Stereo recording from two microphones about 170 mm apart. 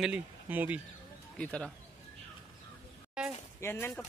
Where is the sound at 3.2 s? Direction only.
5° right (ahead or behind).